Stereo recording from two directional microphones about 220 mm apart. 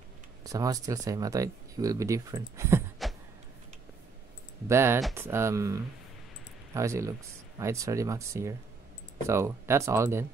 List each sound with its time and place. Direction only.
0.4 s speech: 15° right (ahead or behind)
3.0 s a sound: centre (ahead or behind)
4.6 s speech: 10° right (ahead or behind)